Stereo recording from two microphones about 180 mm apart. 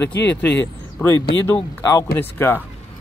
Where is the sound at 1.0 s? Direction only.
15° left (ahead or behind).